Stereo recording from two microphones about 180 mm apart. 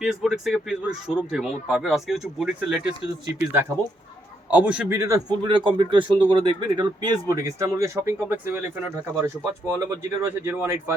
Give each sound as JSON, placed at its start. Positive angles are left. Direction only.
{"t": 0.0, "sound": "speech", "side_deg": 0}
{"t": 4.5, "sound": "speech", "side_deg": -5}